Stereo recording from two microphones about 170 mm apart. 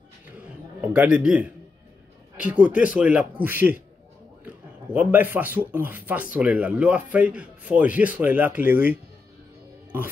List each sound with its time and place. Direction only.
0.7 s speech: 10° right (ahead or behind)
4.9 s speech: 10° right (ahead or behind)